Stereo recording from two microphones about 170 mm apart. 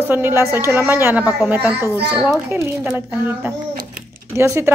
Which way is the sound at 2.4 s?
15° right (ahead or behind).